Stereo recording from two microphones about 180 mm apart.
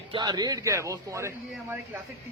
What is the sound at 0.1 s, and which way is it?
A man's voice, 25° right (ahead or behind).